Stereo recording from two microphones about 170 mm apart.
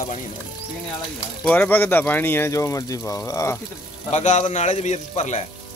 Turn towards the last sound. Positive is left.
turn(degrees=40)  # may be behind; listen again after turning